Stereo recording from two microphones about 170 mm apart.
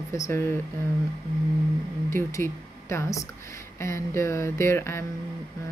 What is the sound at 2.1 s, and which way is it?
Speech, 15° left (ahead or behind).